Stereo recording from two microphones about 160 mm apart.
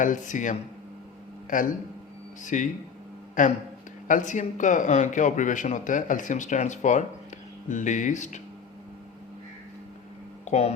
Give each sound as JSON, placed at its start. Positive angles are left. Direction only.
{"t": 0.0, "sound": "a man's voice", "side_deg": 55}
{"t": 10.4, "sound": "speech", "side_deg": 40}